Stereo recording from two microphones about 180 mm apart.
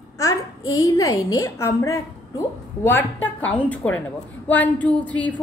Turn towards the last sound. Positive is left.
turn(degrees=10)  # may be behind; listen again after turning